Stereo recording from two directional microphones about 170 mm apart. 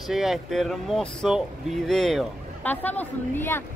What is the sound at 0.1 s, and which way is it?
Speech, centre (ahead or behind).